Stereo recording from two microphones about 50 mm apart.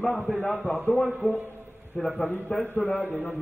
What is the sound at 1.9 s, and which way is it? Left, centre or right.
Speech, centre.